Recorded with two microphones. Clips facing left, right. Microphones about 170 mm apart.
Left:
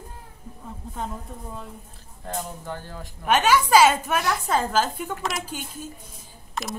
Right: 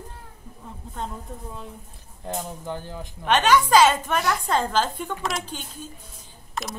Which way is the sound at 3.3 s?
10° left (ahead or behind).